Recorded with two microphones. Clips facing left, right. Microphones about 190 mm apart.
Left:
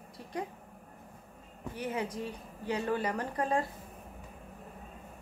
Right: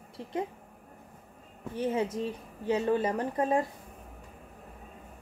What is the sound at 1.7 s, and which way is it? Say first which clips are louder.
A woman's voice: right 6 dB; 25° right (ahead or behind).